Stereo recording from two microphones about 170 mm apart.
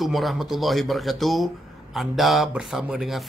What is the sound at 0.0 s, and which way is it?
Speech, centre (ahead or behind).